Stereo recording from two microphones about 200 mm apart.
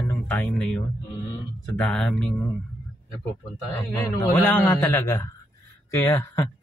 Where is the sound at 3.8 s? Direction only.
10° left (ahead or behind).